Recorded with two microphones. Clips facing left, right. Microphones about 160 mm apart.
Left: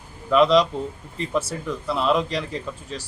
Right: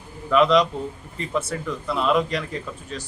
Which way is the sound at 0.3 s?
Centre (ahead or behind).